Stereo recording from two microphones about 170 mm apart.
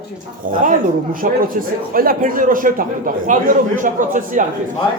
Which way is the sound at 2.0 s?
55° right (ahead or behind).